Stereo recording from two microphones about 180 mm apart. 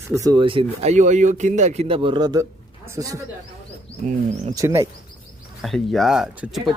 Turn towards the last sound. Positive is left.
turn(degrees=0)  # may be behind; listen again after turning